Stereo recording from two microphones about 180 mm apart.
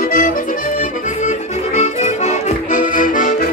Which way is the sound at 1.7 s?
40° left (ahead or behind).